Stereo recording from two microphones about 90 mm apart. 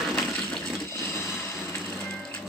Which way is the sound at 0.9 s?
30° left (ahead or behind).